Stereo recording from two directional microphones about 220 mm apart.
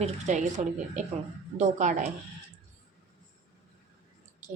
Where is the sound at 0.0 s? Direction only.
30° right (ahead or behind).